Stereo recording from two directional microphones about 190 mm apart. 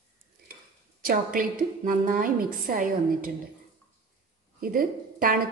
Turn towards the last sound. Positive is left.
turn(degrees=-50)  # may be behind; listen again after turning